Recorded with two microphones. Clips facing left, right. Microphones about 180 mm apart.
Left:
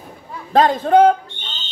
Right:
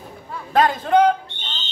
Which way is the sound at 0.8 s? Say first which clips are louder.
Left 4 dB; 35° left (ahead or behind).